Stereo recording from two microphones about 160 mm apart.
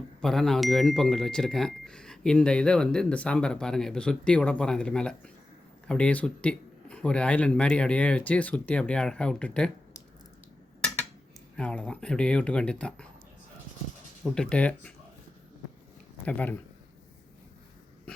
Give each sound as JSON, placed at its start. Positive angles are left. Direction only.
{"t": 0.2, "sound": "speech", "side_deg": 0}
{"t": 11.5, "sound": "speech", "side_deg": 5}
{"t": 14.3, "sound": "speech", "side_deg": 5}
{"t": 16.2, "sound": "speech", "side_deg": 10}